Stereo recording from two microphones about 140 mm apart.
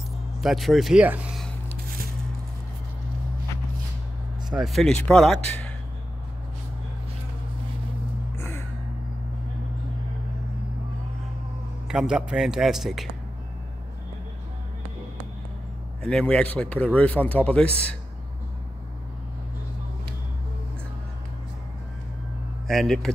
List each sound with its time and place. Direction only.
0.4 s speech: centre (ahead or behind)
4.6 s speech: centre (ahead or behind)
8.4 s music: 20° left (ahead or behind)
11.9 s speech: 5° right (ahead or behind)
16.0 s speech: 5° left (ahead or behind)
22.7 s speech: 5° left (ahead or behind)